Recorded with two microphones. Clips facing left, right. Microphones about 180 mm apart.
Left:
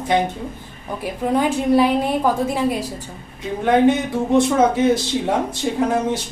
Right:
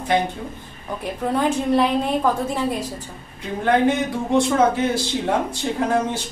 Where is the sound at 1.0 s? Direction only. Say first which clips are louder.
Left 2 dB; 10° left (ahead or behind).